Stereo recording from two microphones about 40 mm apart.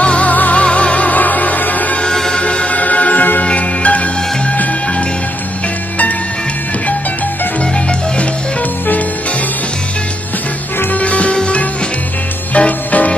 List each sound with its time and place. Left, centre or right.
0.0 s music: left
0.3 s music: left
0.7 s music: left
2.0 s music: centre
2.4 s music: left
10.9 s music: left
12.5 s music: left